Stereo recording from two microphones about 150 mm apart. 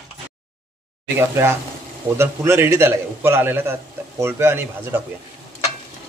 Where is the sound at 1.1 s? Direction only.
20° right (ahead or behind).